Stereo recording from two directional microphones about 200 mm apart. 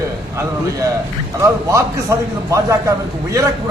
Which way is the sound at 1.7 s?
15° right (ahead or behind).